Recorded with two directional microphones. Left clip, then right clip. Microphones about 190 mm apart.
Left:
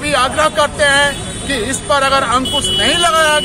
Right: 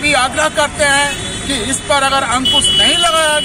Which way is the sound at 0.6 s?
25° left (ahead or behind).